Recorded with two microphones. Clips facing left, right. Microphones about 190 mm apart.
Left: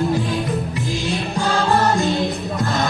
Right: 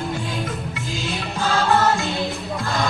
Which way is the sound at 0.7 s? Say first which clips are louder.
Left 5 dB; 35° left (ahead or behind).